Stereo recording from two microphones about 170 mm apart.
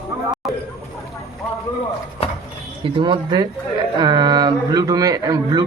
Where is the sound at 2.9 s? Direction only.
30° right (ahead or behind).